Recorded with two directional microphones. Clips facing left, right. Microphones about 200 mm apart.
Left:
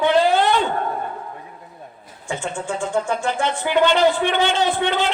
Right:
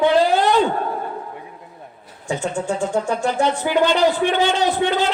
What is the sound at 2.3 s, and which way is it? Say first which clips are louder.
Speech: right 4 dB; 40° right (ahead or behind).